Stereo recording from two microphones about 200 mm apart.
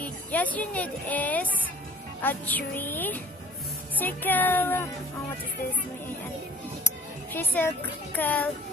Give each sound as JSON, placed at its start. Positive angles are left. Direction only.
{"t": 0.0, "sound": "a woman's voice", "side_deg": 10}
{"t": 7.3, "sound": "speech", "side_deg": 10}